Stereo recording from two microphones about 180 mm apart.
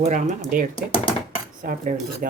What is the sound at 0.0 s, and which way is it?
Cutlery, 45° right (ahead or behind).